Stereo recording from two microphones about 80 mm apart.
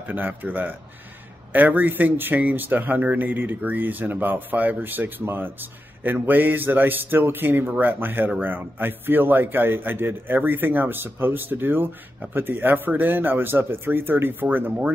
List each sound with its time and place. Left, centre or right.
0.1 s speech: right